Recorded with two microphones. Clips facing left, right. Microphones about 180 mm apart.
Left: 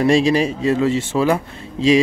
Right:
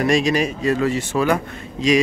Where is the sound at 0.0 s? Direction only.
30° left (ahead or behind).